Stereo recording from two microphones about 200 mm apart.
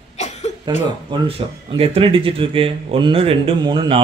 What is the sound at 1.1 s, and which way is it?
Speech, 25° right (ahead or behind).